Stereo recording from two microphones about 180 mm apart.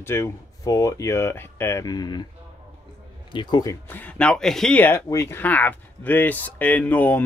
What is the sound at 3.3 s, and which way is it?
Speech, 25° left (ahead or behind).